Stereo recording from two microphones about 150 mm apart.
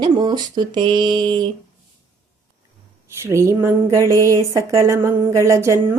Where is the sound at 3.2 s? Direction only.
20° right (ahead or behind).